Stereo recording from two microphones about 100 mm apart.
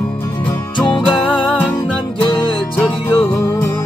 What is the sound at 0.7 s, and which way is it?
Music, 55° left (ahead or behind).